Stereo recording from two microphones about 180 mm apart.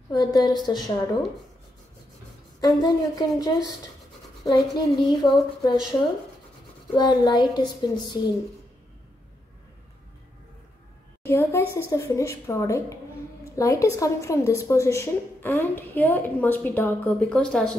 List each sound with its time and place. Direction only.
0.1 s a woman's voice: 20° left (ahead or behind)
2.6 s a woman's voice: 20° left (ahead or behind)
7.0 s a woman's voice: 25° left (ahead or behind)
11.2 s a woman's voice: 15° left (ahead or behind)